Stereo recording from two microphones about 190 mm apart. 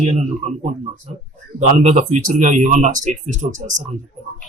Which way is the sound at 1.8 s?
40° right (ahead or behind).